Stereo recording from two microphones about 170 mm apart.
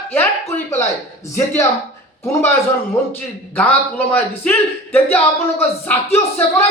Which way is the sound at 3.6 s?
10° left (ahead or behind).